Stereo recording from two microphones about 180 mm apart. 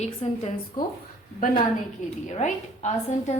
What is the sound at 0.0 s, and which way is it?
Speech, 35° left (ahead or behind).